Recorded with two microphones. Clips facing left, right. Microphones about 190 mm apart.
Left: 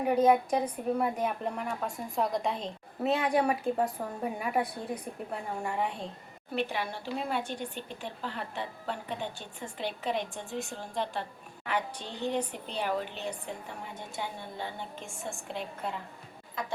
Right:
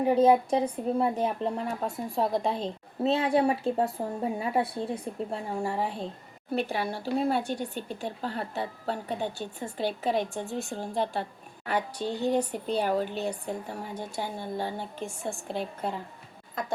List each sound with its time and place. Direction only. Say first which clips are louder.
0.0 s a woman's voice: right 3 dB; 30° right (ahead or behind)